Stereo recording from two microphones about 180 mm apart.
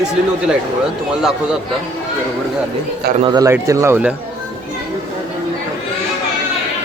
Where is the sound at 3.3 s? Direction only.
20° right (ahead or behind).